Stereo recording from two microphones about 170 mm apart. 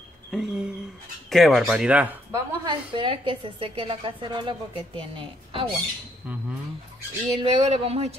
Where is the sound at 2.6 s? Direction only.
30° right (ahead or behind).